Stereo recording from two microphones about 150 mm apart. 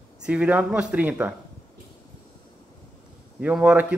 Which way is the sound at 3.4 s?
10° right (ahead or behind).